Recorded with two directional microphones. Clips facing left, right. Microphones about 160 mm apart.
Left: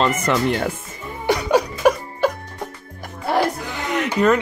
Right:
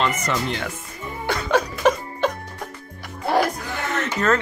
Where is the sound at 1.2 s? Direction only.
15° left (ahead or behind).